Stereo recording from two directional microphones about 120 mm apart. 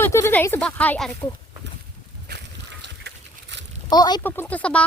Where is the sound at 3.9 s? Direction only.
35° left (ahead or behind).